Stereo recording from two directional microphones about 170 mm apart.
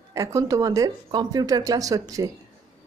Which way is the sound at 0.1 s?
20° right (ahead or behind).